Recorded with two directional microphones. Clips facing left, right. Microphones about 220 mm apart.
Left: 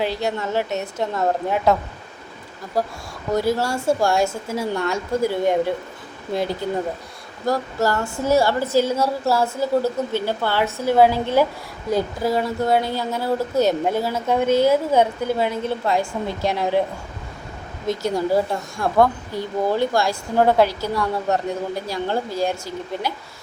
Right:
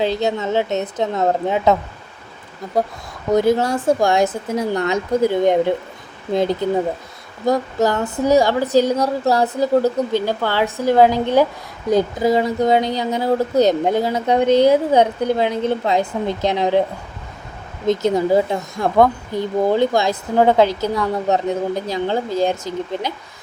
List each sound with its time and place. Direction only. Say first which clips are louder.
0.0 s speech: right 4 dB; 20° right (ahead or behind)
3.3 s speech: right 5 dB; 20° right (ahead or behind)
17.8 s speech: right 5 dB; 20° right (ahead or behind)
20.9 s a woman's voice: right 3 dB; centre (ahead or behind)
21.8 s speech: right 3 dB; 20° right (ahead or behind)